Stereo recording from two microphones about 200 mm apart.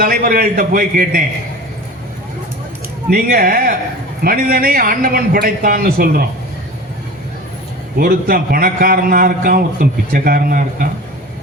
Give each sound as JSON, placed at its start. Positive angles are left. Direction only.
{"t": 0.0, "sound": "a man's voice", "side_deg": -45}
{"t": 3.1, "sound": "a man's voice", "side_deg": -45}
{"t": 7.9, "sound": "a man's voice", "side_deg": -50}